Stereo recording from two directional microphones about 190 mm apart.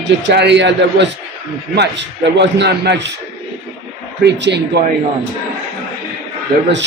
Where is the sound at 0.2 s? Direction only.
65° right (ahead or behind).